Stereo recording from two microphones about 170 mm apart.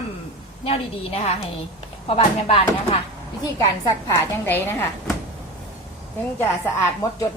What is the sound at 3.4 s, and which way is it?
Speech, 20° left (ahead or behind).